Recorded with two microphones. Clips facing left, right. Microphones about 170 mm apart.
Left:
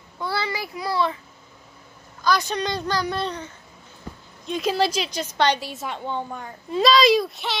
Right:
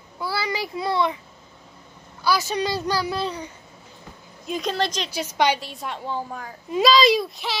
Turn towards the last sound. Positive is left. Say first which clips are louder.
# left 1 dB
turn(degrees=0)  # may be behind; listen again after turning